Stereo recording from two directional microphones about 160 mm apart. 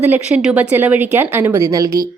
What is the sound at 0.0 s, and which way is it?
A woman's voice, 10° right (ahead or behind).